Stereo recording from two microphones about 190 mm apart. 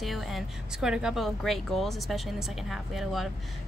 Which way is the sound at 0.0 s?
Centre (ahead or behind).